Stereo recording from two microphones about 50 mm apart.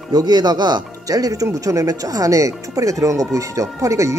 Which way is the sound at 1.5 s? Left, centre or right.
Right.